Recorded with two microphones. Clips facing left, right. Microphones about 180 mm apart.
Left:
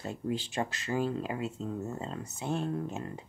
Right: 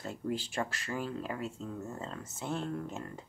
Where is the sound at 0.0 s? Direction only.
20° left (ahead or behind).